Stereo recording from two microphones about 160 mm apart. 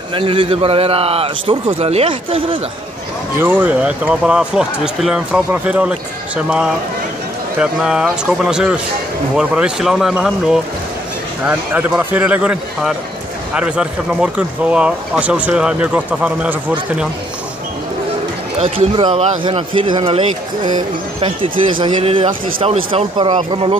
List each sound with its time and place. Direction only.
0.1 s speech: 35° right (ahead or behind)
3.3 s speech: 10° right (ahead or behind)
18.9 s speech: 30° right (ahead or behind)